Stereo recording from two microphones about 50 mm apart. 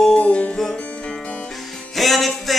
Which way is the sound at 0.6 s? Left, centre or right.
Centre.